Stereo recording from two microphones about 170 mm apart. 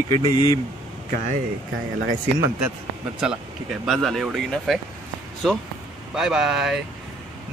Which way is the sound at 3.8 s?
Centre (ahead or behind).